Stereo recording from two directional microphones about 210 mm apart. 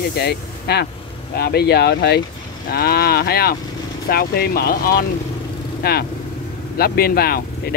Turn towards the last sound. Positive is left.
turn(degrees=45)  # may be behind; listen again after turning